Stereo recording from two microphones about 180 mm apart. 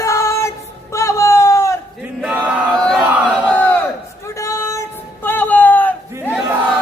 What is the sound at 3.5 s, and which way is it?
Crowd, 10° left (ahead or behind).